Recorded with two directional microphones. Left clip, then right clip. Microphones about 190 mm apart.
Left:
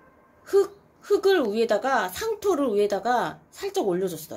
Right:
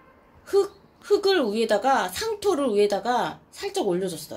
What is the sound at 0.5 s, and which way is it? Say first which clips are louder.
Speech: left 1 dB; 10° left (ahead or behind).